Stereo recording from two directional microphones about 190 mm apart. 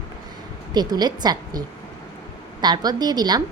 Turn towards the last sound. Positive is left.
turn(degrees=-20)  # may be behind; listen again after turning